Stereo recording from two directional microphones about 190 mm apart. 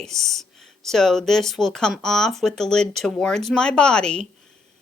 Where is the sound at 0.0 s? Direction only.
Centre (ahead or behind).